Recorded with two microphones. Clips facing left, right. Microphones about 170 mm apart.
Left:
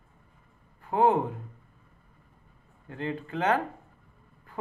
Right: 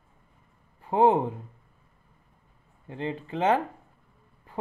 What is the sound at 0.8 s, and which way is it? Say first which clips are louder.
Speech: right 2 dB; 25° right (ahead or behind).